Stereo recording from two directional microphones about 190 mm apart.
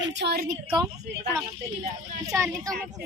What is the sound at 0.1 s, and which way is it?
Speech, 65° right (ahead or behind).